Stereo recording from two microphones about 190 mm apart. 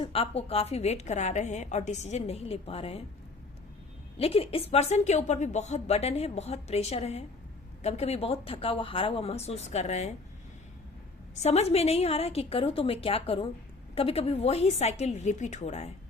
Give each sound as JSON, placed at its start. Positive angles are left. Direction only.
{"t": 0.0, "sound": "speech", "side_deg": 30}
{"t": 4.2, "sound": "speech", "side_deg": 30}
{"t": 11.4, "sound": "speech", "side_deg": 35}